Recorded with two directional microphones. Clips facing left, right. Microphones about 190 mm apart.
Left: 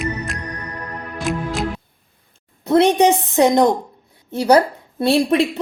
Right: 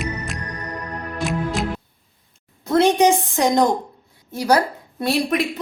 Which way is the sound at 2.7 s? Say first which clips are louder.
Left 2 dB; 20° left (ahead or behind).